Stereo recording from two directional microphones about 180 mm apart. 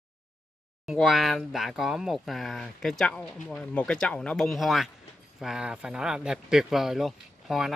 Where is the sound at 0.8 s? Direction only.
Centre (ahead or behind).